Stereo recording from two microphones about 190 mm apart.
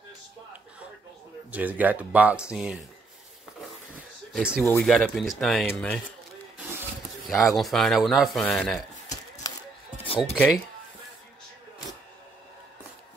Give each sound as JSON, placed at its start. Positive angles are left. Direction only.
{"t": 1.5, "sound": "speech", "side_deg": -10}
{"t": 4.3, "sound": "speech", "side_deg": -5}
{"t": 7.2, "sound": "speech", "side_deg": 0}
{"t": 10.0, "sound": "music", "side_deg": 30}